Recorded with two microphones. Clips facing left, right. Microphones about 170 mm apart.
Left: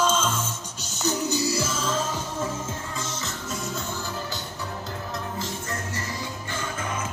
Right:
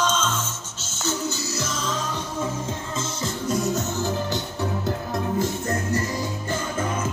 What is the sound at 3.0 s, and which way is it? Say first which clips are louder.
Music: right 5 dB; 30° right (ahead or behind).